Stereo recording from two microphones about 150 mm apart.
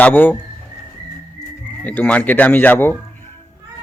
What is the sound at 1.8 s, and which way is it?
A man's voice, 10° left (ahead or behind).